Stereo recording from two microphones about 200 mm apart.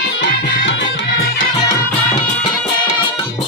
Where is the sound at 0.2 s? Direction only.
65° left (ahead or behind).